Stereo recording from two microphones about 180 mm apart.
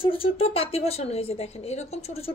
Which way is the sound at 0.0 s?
30° left (ahead or behind).